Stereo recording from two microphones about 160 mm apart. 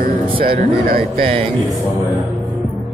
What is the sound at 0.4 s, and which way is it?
Speech, 65° right (ahead or behind).